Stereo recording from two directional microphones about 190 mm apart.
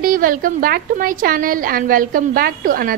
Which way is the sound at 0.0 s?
45° right (ahead or behind).